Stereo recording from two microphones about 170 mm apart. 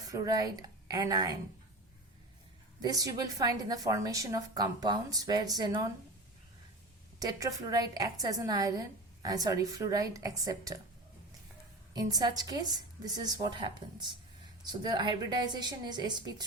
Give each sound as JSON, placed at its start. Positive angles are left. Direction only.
{"t": 0.0, "sound": "speech", "side_deg": -20}
{"t": 2.8, "sound": "a woman's voice", "side_deg": -20}
{"t": 7.2, "sound": "a woman's voice", "side_deg": -20}
{"t": 11.9, "sound": "a woman's voice", "side_deg": -25}